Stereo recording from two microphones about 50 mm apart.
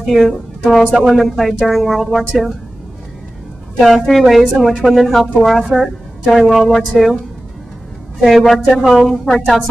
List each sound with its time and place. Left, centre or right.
0.0 s a woman's voice: centre
4.2 s a woman's voice: centre
4.6 s a woman's voice: centre
5.6 s a woman's voice: centre
8.2 s a woman's voice: centre